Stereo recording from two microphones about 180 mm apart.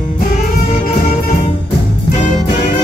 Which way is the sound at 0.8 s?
45° left (ahead or behind).